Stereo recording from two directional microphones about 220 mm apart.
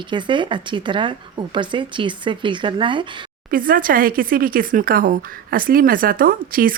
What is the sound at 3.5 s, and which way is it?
Speech, 40° right (ahead or behind).